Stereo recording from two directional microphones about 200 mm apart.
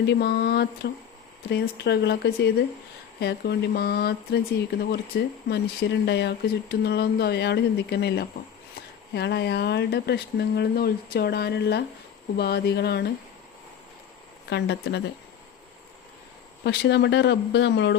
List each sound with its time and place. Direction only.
0.0 s speech: 60° left (ahead or behind)
14.5 s speech: 60° left (ahead or behind)
16.6 s speech: 60° left (ahead or behind)